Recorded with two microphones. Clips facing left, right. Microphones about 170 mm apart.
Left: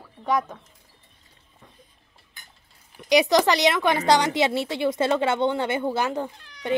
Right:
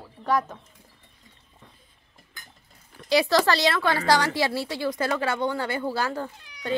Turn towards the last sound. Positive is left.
turn(degrees=20)  # may be behind; listen again after turning